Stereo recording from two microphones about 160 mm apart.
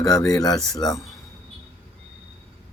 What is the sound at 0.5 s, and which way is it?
Speech, 5° left (ahead or behind).